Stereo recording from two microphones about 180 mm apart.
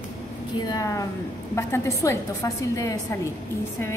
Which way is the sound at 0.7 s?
20° left (ahead or behind).